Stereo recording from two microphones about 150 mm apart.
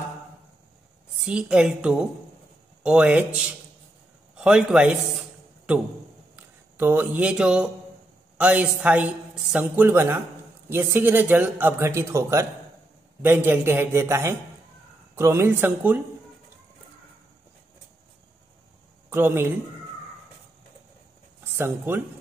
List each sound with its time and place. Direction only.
1.2 s a man's voice: 5° right (ahead or behind)
6.3 s a man's voice: 15° right (ahead or behind)
19.0 s speech: 15° right (ahead or behind)
21.5 s a man's voice: 15° right (ahead or behind)